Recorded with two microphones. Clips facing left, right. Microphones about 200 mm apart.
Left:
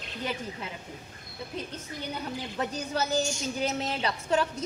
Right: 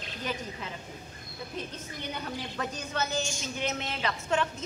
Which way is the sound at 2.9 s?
35° left (ahead or behind).